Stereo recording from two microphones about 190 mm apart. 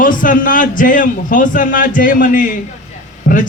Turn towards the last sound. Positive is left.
turn(degrees=45)  # may be behind; listen again after turning